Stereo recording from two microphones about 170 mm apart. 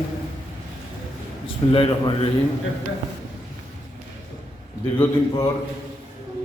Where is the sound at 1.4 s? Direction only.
30° left (ahead or behind).